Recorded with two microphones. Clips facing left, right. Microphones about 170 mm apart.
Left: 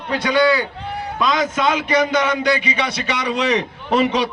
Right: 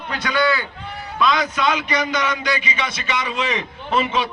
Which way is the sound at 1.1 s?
45° left (ahead or behind).